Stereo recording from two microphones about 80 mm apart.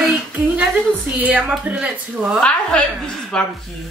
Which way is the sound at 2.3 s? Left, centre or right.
Centre.